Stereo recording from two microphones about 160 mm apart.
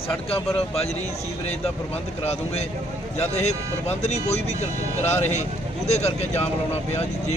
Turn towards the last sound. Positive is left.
turn(degrees=45)  # may be behind; listen again after turning